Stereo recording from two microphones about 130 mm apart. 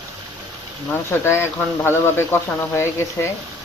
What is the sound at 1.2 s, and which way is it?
Speech, 20° left (ahead or behind).